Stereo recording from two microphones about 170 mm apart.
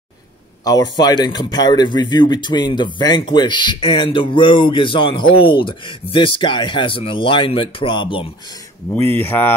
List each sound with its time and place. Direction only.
0.7 s speech: 25° left (ahead or behind)
8.9 s speech: 10° left (ahead or behind)